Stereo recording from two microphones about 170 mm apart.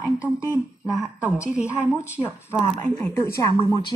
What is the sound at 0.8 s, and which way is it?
A woman's voice, 5° right (ahead or behind).